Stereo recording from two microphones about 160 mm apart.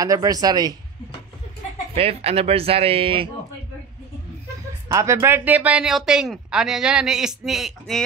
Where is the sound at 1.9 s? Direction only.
40° right (ahead or behind).